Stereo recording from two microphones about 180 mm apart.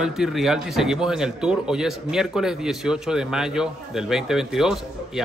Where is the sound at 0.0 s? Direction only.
5° right (ahead or behind).